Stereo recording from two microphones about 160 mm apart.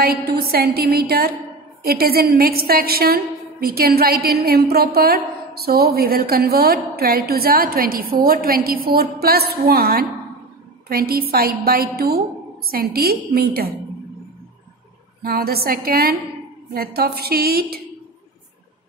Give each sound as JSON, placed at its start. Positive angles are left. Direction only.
{"t": 0.0, "sound": "a woman's voice", "side_deg": -75}
{"t": 15.2, "sound": "a woman's voice", "side_deg": -70}